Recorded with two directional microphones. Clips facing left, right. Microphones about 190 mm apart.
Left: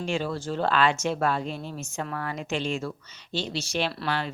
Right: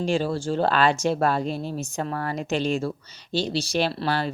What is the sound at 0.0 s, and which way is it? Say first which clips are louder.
Speech: right 5 dB; 35° right (ahead or behind).